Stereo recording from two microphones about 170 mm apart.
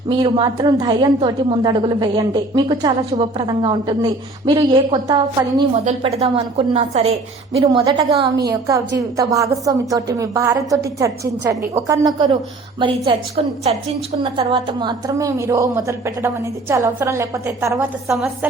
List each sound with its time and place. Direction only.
0.1 s a woman's voice: 25° right (ahead or behind)
3.1 s a woman's voice: 35° right (ahead or behind); by 10.8 s 20° right (ahead or behind)
11.9 s a woman's voice: 25° right (ahead or behind)